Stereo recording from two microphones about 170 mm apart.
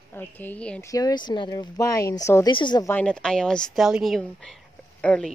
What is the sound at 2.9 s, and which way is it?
Speech, 5° left (ahead or behind).